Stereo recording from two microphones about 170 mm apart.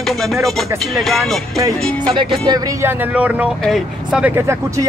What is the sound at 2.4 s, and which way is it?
Speech, 20° right (ahead or behind).